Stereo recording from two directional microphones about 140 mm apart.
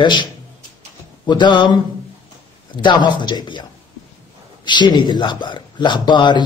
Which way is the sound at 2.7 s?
35° left (ahead or behind).